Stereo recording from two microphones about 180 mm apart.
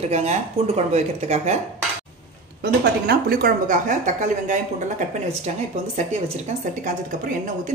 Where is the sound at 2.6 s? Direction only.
60° right (ahead or behind).